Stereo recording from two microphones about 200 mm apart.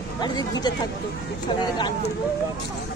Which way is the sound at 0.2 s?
20° left (ahead or behind).